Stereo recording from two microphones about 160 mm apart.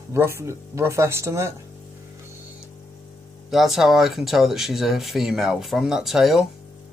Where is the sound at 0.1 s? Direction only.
15° right (ahead or behind).